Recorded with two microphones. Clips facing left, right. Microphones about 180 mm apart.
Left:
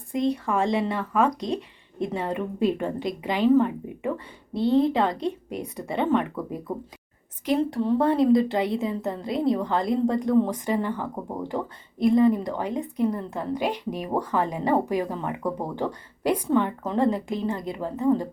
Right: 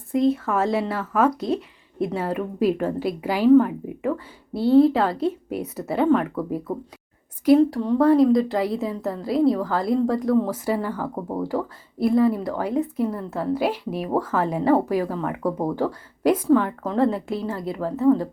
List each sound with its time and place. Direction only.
0.1 s a woman's voice: centre (ahead or behind)
17.7 s a woman's voice: 15° left (ahead or behind)